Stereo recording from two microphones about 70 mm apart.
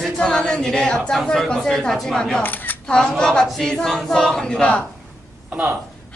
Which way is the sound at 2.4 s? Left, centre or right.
Left.